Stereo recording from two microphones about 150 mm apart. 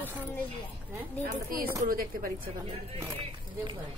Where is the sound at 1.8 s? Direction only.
70° right (ahead or behind).